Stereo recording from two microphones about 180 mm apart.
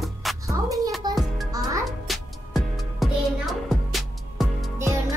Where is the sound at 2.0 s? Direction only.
Centre (ahead or behind).